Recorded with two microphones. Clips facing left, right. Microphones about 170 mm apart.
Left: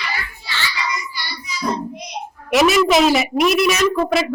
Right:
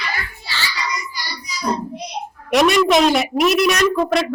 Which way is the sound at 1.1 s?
40° right (ahead or behind).